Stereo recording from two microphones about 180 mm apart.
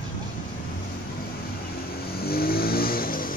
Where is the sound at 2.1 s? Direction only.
55° left (ahead or behind).